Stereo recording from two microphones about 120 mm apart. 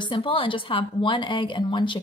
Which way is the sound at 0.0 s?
45° left (ahead or behind).